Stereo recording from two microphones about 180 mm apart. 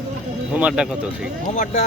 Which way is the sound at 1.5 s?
40° left (ahead or behind).